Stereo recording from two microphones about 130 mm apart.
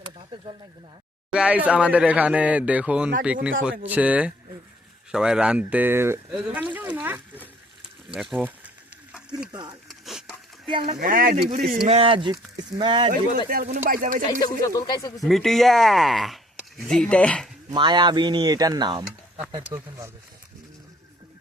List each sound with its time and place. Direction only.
0.3 s speech: 40° right (ahead or behind)
1.3 s speech: 10° right (ahead or behind)
8.1 s speech: centre (ahead or behind)
8.4 s speech: 10° right (ahead or behind)
9.5 s speech: 30° right (ahead or behind)
9.9 s a sound: centre (ahead or behind)
10.7 s speech: 40° right (ahead or behind)
11.0 s speech: 90° right
11.4 s speech: 60° right (ahead or behind); by 13.1 s 40° right (ahead or behind)
13.7 s speech: 80° right
14.3 s speech: 30° left (ahead or behind)
15.2 s speech: centre (ahead or behind)
17.7 s speech: 35° right (ahead or behind)